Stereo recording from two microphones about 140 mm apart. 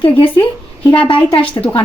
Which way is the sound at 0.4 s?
20° left (ahead or behind).